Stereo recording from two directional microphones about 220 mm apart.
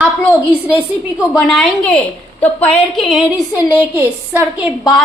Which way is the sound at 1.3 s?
5° left (ahead or behind).